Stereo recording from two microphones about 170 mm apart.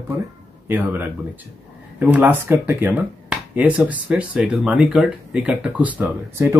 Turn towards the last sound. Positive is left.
turn(degrees=-15)  # may be behind; listen again after turning